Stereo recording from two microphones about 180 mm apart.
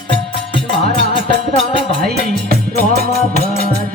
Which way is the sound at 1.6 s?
30° left (ahead or behind).